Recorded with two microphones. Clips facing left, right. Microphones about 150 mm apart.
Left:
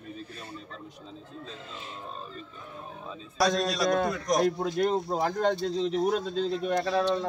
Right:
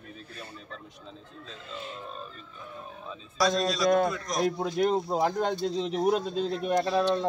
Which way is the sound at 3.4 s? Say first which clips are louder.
Even; 65° left (ahead or behind).